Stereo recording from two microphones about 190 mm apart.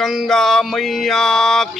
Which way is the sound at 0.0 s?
Centre (ahead or behind).